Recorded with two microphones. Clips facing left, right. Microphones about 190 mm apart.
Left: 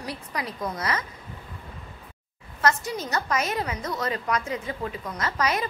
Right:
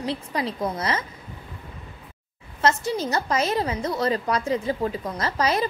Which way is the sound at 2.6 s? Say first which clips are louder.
Right 3 dB; 30° right (ahead or behind).